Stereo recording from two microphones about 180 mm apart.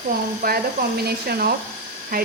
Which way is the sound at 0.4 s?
60° right (ahead or behind).